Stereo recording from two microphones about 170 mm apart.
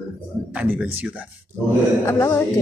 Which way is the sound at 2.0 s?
15° left (ahead or behind).